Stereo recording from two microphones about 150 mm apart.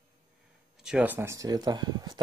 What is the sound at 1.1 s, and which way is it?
Speech, 20° right (ahead or behind).